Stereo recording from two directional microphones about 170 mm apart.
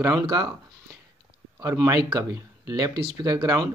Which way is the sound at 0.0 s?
25° right (ahead or behind).